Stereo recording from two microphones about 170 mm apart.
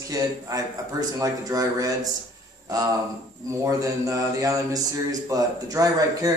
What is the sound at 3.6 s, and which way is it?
Speech, 20° right (ahead or behind).